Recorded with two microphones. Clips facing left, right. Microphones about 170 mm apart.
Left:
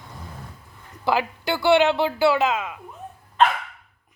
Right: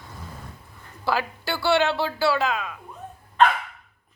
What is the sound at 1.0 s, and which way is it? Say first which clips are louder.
A woman's voice: left 3 dB; 20° left (ahead or behind).